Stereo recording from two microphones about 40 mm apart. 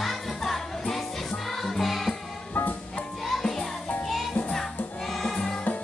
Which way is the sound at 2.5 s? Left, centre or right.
Left.